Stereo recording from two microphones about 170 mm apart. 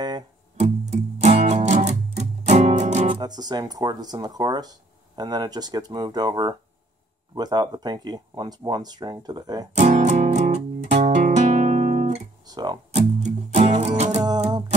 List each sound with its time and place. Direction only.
0.6 s music: 40° right (ahead or behind)
3.2 s speech: 25° right (ahead or behind)
9.8 s music: 40° right (ahead or behind)
12.4 s speech: 25° right (ahead or behind)
12.9 s music: 40° right (ahead or behind)